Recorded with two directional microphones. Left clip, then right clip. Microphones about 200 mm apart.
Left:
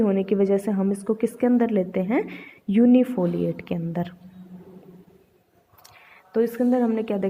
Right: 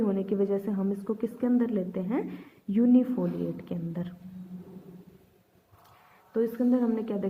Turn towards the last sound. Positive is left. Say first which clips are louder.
# left 6 dB
turn(degrees=35)  # may be behind; listen again after turning